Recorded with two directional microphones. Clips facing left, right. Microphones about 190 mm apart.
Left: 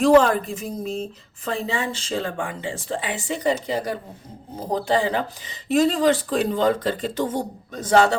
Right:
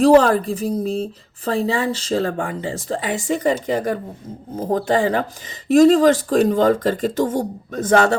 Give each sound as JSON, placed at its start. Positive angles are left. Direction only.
{"t": 0.0, "sound": "speech", "side_deg": -35}